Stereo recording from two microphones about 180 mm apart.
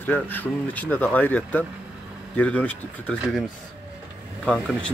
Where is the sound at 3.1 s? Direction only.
Centre (ahead or behind).